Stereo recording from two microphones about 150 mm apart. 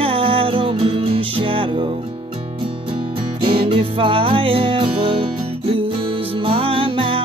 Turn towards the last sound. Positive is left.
turn(degrees=-35)  # may be behind; listen again after turning